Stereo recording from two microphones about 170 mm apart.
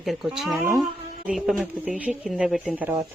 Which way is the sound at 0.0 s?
Centre (ahead or behind).